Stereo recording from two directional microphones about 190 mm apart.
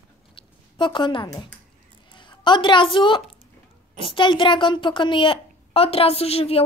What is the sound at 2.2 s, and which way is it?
A woman's voice, 25° left (ahead or behind).